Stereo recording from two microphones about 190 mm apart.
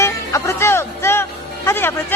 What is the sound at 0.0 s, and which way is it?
Music, 15° left (ahead or behind).